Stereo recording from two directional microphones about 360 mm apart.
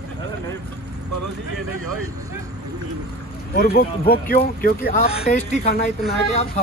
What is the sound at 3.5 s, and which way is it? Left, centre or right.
Speech, left.